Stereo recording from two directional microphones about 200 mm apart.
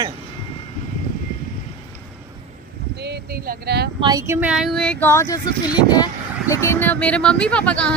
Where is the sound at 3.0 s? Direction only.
50° right (ahead or behind).